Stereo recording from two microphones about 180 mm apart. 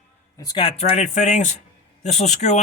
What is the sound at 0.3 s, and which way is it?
A man's voice, 25° left (ahead or behind).